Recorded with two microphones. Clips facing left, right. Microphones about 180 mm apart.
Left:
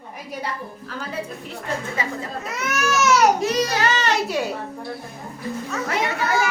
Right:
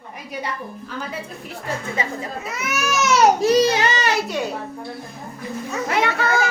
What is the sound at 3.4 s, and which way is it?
Speech, 30° right (ahead or behind).